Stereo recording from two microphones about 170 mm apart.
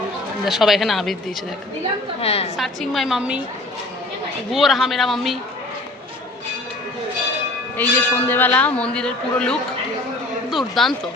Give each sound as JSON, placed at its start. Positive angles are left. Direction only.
{"t": 0.6, "sound": "a woman's voice", "side_deg": 0}
{"t": 2.2, "sound": "a woman's voice", "side_deg": 35}
{"t": 2.6, "sound": "a woman's voice", "side_deg": 0}
{"t": 4.5, "sound": "a woman's voice", "side_deg": 0}
{"t": 7.8, "sound": "a woman's voice", "side_deg": 10}